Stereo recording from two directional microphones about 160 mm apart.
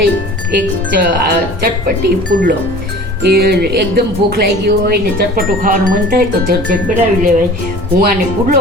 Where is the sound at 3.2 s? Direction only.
80° right.